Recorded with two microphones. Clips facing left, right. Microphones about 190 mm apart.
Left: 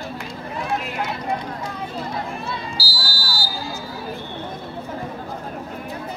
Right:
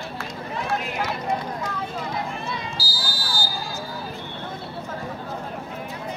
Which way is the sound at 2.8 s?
20° right (ahead or behind).